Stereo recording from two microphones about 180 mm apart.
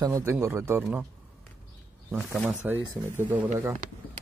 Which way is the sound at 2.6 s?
10° right (ahead or behind).